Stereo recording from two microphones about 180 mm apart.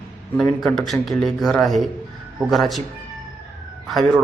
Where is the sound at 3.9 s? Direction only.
Centre (ahead or behind).